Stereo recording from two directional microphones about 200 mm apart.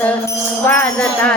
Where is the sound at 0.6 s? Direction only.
10° left (ahead or behind).